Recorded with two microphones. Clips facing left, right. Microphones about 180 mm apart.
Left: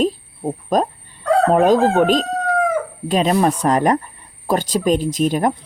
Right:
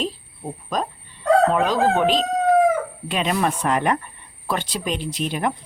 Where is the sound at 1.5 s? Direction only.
45° left (ahead or behind).